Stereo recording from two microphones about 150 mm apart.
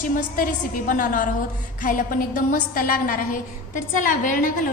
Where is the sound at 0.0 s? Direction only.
65° left (ahead or behind).